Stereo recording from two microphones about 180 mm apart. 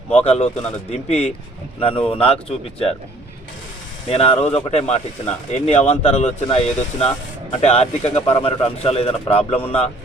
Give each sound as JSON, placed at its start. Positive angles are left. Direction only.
{"t": 0.1, "sound": "speech", "side_deg": 35}
{"t": 4.1, "sound": "speech", "side_deg": 35}